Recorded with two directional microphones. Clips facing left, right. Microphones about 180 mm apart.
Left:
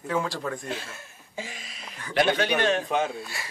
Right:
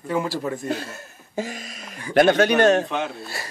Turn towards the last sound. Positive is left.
turn(degrees=-40)  # may be behind; listen again after turning